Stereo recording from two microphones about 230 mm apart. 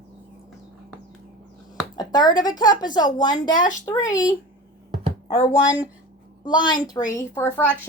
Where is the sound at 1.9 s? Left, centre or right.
Centre.